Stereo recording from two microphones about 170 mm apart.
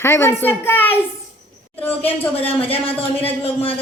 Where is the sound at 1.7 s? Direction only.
10° left (ahead or behind).